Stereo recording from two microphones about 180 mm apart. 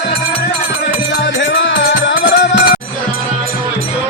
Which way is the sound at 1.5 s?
85° left.